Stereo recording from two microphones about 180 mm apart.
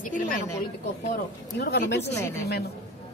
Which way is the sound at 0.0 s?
45° left (ahead or behind).